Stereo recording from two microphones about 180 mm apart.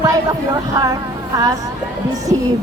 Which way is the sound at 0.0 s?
20° right (ahead or behind).